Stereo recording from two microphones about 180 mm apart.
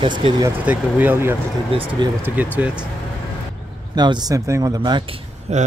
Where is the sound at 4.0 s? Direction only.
20° right (ahead or behind).